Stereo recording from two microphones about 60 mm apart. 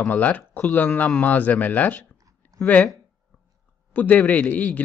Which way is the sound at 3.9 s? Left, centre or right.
Left.